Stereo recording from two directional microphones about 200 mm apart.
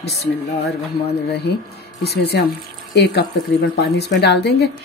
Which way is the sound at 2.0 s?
55° left (ahead or behind).